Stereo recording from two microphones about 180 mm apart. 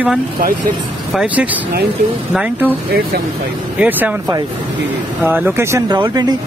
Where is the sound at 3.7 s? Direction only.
10° right (ahead or behind).